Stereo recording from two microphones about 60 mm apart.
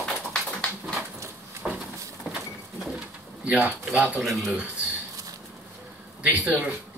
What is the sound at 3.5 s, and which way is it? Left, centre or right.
Speech, right.